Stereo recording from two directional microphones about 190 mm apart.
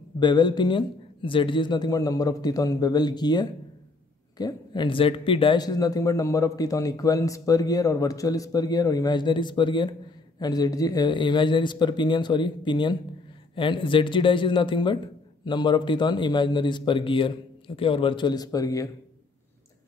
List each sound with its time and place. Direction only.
0.2 s speech: 25° left (ahead or behind)